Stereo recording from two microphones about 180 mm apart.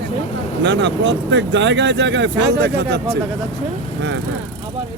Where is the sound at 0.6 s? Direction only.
80° right.